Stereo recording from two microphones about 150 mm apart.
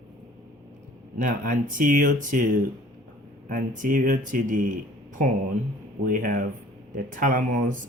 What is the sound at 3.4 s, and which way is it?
Speech, 65° right (ahead or behind).